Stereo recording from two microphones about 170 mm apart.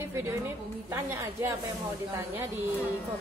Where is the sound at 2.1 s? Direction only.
15° right (ahead or behind).